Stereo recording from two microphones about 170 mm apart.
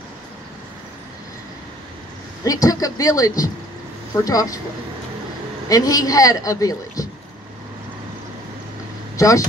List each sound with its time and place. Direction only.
2.4 s a man's voice: 20° left (ahead or behind)
5.7 s a man's voice: 20° left (ahead or behind)
9.1 s speech: 20° left (ahead or behind)